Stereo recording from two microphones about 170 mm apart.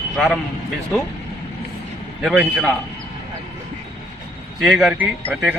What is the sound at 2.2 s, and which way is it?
Speech, centre (ahead or behind).